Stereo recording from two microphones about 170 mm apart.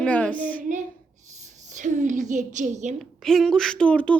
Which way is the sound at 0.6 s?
50° right (ahead or behind).